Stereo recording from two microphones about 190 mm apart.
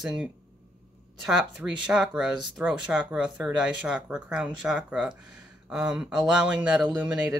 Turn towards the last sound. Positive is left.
turn(degrees=-10)  # may be behind; listen again after turning